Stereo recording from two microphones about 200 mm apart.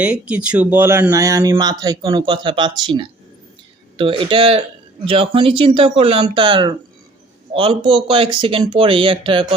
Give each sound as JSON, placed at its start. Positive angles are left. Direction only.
{"t": 0.0, "sound": "speech", "side_deg": -5}
{"t": 3.9, "sound": "speech", "side_deg": -25}